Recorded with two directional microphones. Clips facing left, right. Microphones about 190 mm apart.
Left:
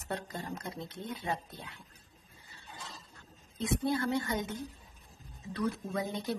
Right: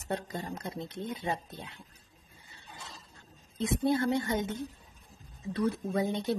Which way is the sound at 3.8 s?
25° right (ahead or behind).